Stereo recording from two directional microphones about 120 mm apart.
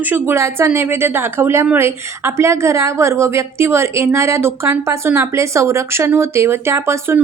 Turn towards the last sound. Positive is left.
turn(degrees=-20)  # may be behind; listen again after turning